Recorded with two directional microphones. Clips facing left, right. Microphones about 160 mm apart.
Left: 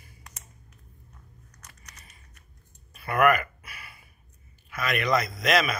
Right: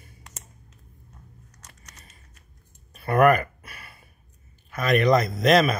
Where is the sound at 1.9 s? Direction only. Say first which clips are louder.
Right 1 dB; 25° right (ahead or behind).